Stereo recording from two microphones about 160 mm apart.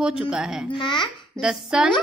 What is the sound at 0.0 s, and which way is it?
Speech, 5° right (ahead or behind).